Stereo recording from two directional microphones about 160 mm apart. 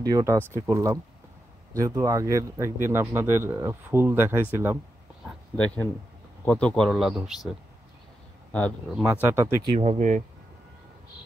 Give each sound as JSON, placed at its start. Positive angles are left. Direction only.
{"t": 0.0, "sound": "speech", "side_deg": -20}
{"t": 6.4, "sound": "speech", "side_deg": 10}
{"t": 8.5, "sound": "speech", "side_deg": 10}
{"t": 9.0, "sound": "speech", "side_deg": -15}
{"t": 9.6, "sound": "speech", "side_deg": -35}